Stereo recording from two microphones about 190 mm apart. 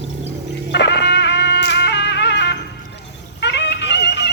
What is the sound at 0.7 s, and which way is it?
Music, 65° left (ahead or behind).